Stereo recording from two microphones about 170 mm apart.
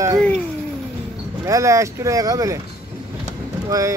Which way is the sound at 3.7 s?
20° right (ahead or behind).